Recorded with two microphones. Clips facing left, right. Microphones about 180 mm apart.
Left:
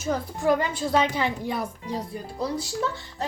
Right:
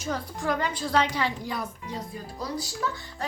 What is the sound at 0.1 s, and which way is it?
A woman's voice, 20° left (ahead or behind).